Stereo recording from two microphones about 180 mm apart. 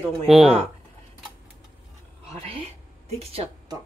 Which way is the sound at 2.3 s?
30° right (ahead or behind).